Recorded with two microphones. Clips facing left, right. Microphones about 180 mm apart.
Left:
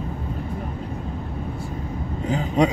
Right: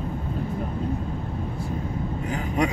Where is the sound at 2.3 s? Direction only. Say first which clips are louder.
Left 5 dB; 20° left (ahead or behind).